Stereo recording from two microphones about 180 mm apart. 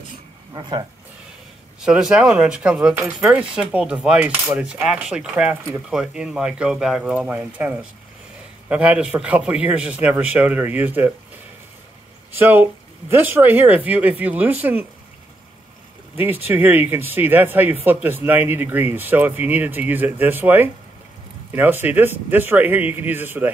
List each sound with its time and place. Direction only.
0.5 s speech: 25° right (ahead or behind)
1.8 s cutlery: 5° right (ahead or behind)
8.6 s speech: 5° right (ahead or behind)
12.4 s speech: 10° right (ahead or behind)
16.2 s speech: 10° right (ahead or behind)